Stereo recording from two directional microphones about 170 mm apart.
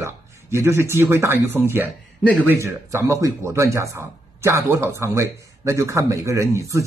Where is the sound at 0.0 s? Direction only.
15° right (ahead or behind).